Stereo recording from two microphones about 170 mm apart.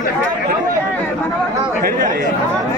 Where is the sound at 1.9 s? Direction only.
50° right (ahead or behind).